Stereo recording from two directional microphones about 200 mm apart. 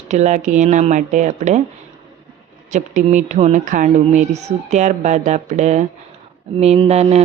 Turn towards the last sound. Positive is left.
turn(degrees=-30)  # may be behind; listen again after turning